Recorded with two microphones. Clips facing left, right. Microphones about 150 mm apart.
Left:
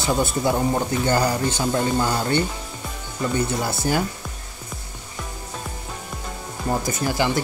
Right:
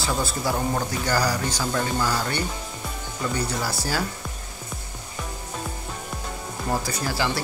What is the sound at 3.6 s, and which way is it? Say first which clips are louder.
Speech: left 4 dB; 20° left (ahead or behind).